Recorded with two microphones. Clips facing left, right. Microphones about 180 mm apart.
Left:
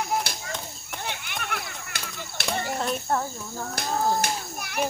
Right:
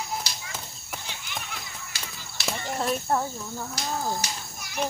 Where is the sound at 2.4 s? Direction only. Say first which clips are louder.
Left 1 dB; centre (ahead or behind).